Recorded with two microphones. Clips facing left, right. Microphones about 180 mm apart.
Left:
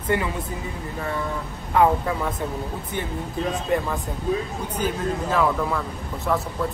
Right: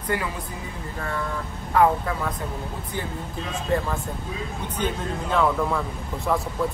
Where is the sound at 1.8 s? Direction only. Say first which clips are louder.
Left 1 dB; 20° left (ahead or behind).